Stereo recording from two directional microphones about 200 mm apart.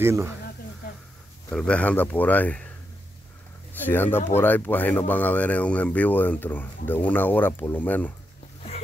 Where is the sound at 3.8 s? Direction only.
10° left (ahead or behind).